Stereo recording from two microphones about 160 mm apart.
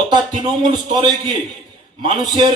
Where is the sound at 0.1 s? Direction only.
30° right (ahead or behind).